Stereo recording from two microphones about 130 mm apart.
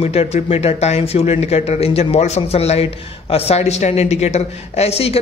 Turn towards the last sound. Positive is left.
turn(degrees=50)  # may be behind; listen again after turning